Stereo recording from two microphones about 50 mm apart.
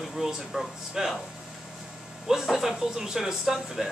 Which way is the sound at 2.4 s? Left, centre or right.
Centre.